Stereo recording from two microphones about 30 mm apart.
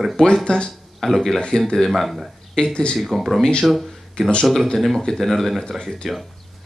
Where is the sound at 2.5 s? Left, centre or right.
Left.